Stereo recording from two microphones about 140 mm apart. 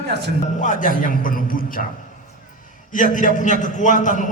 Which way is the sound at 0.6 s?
65° left (ahead or behind).